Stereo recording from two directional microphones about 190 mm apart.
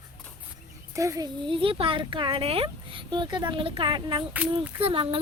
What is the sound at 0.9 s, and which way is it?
Speech, 15° right (ahead or behind).